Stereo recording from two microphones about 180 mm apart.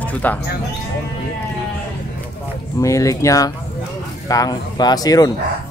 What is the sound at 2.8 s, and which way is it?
Speech, 20° left (ahead or behind).